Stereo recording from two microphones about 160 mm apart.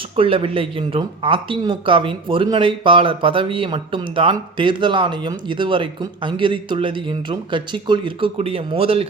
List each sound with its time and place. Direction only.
0.2 s speech: 35° right (ahead or behind)